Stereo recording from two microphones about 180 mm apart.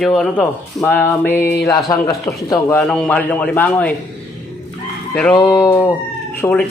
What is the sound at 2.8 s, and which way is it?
Speech, centre (ahead or behind).